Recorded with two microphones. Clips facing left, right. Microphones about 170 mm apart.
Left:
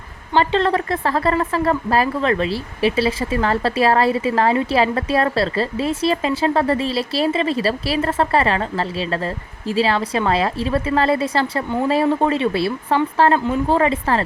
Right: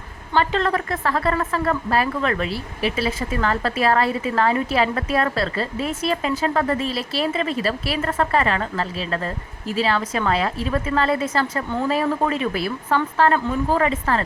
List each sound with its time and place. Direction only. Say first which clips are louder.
0.3 s speech: left 3 dB; 35° left (ahead or behind)